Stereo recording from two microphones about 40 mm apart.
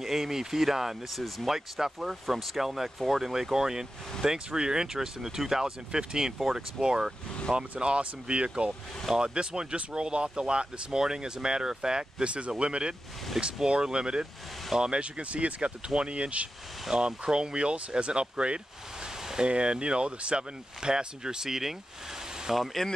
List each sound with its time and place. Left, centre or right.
0.0 s speech: centre
7.8 s speech: right; by 21.7 s centre
22.5 s speech: centre